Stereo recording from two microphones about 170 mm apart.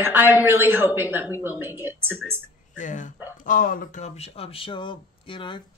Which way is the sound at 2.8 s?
50° left (ahead or behind).